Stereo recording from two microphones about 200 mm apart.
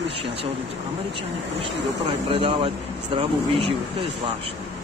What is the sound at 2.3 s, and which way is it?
Speech, 25° right (ahead or behind).